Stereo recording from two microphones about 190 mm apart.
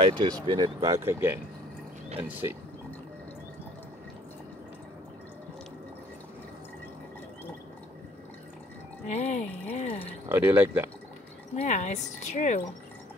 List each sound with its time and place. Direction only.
0.0 s speech: 25° right (ahead or behind)
9.0 s speech: 35° left (ahead or behind)
10.2 s speech: 10° right (ahead or behind)
11.5 s speech: 40° left (ahead or behind)